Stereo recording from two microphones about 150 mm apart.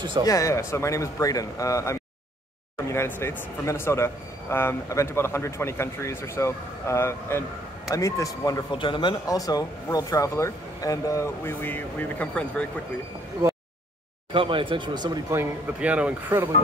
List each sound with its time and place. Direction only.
0.2 s speech: 20° left (ahead or behind)
14.3 s speech: 35° right (ahead or behind)
15.3 s a man's voice: 10° right (ahead or behind)